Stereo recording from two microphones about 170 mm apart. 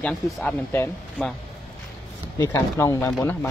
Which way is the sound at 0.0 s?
5° left (ahead or behind).